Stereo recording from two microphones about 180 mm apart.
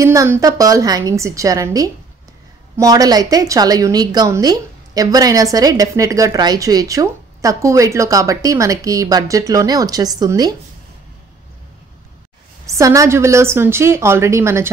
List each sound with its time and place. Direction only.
0.0 s a woman's voice: 15° right (ahead or behind)
12.6 s a woman's voice: 15° right (ahead or behind)